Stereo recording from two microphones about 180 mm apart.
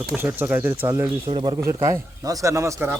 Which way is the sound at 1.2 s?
25° right (ahead or behind).